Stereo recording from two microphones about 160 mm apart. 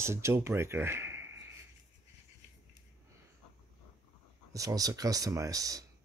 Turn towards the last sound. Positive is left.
turn(degrees=-20)  # may be behind; listen again after turning